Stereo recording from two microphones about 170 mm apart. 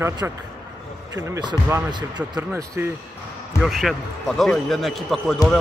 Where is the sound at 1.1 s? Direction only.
20° right (ahead or behind).